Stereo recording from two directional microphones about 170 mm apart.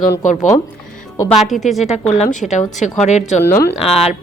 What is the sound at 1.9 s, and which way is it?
Speech, 45° left (ahead or behind).